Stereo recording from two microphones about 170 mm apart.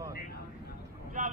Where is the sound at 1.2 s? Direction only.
50° right (ahead or behind).